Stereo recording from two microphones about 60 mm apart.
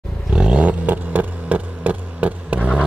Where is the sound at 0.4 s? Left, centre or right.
Right.